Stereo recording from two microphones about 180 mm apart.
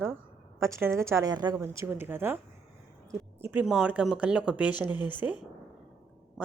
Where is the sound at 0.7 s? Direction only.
15° right (ahead or behind).